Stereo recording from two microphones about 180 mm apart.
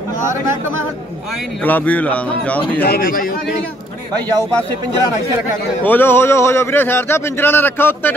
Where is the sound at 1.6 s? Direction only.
10° left (ahead or behind).